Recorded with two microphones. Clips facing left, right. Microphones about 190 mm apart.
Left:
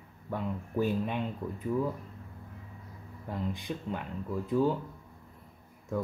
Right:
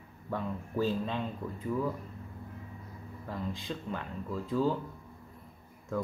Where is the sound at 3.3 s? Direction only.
15° left (ahead or behind).